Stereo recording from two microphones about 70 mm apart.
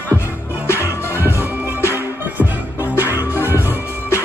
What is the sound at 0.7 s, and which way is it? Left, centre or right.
Music, left.